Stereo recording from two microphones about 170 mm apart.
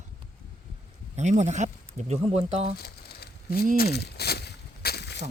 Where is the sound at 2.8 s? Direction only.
70° left (ahead or behind).